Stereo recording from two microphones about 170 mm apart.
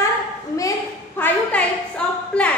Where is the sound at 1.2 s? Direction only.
10° left (ahead or behind).